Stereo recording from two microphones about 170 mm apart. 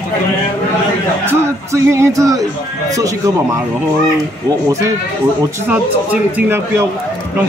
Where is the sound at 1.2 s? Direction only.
15° right (ahead or behind).